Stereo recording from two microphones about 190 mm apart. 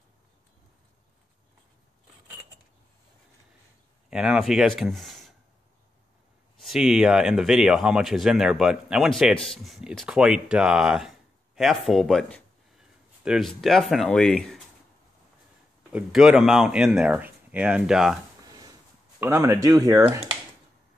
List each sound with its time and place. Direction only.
4.1 s speech: 5° right (ahead or behind)
6.6 s speech: centre (ahead or behind)
15.9 s speech: 5° right (ahead or behind)
19.1 s speech: 15° right (ahead or behind)